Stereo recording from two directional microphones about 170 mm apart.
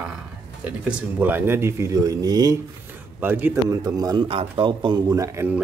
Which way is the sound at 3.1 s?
10° right (ahead or behind).